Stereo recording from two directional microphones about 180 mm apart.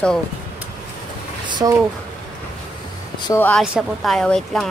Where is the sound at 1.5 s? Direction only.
20° right (ahead or behind).